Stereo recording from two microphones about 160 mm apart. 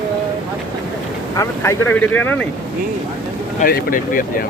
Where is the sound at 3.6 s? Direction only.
65° left (ahead or behind).